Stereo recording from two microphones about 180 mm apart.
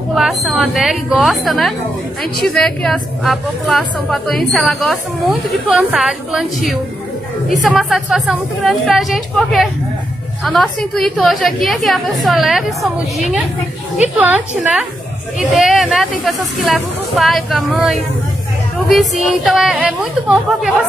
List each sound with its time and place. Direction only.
0.1 s a woman's voice: centre (ahead or behind)